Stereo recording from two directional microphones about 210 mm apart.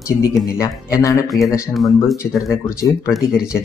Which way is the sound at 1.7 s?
Centre (ahead or behind).